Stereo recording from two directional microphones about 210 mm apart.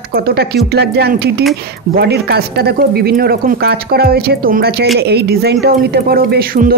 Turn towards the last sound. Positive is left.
turn(degrees=-45)  # may be behind; listen again after turning